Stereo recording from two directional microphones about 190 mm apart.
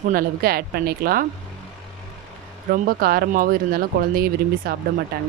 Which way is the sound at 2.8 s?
50° right (ahead or behind).